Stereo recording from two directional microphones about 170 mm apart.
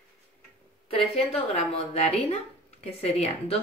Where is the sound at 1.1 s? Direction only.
35° left (ahead or behind).